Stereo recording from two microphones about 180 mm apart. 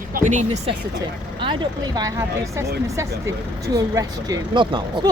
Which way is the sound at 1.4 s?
25° right (ahead or behind).